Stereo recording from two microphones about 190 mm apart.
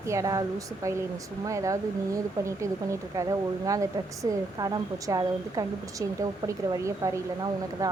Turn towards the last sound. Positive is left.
turn(degrees=-15)  # may be behind; listen again after turning